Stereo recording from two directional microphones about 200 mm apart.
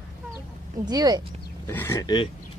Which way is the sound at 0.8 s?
20° right (ahead or behind).